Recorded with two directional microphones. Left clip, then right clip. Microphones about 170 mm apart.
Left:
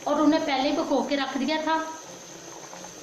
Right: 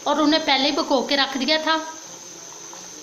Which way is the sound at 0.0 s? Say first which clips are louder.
Right 3 dB; 65° right (ahead or behind).